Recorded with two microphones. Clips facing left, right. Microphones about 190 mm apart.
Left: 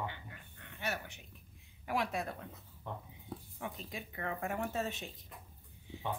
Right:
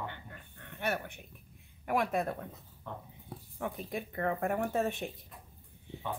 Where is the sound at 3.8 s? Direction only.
55° right (ahead or behind).